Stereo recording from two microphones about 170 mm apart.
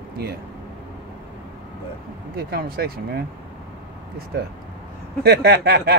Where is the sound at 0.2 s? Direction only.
70° right (ahead or behind).